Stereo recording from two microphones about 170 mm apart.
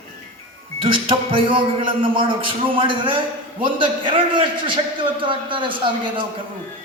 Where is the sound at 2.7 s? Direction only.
30° right (ahead or behind).